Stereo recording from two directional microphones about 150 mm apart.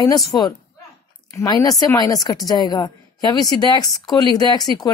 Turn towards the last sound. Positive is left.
turn(degrees=25)  # may be behind; listen again after turning